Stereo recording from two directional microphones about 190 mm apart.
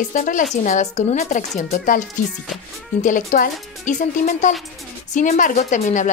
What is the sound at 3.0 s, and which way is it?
Speech, 45° left (ahead or behind).